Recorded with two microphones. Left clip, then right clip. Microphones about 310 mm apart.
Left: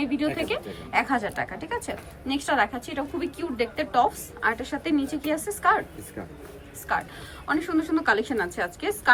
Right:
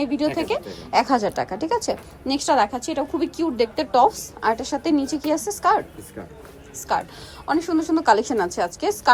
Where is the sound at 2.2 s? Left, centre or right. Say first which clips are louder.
Right 5 dB; centre.